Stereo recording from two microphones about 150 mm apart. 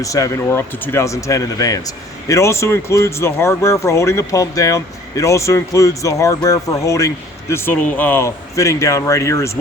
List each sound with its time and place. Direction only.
0.0 s speech: 20° left (ahead or behind)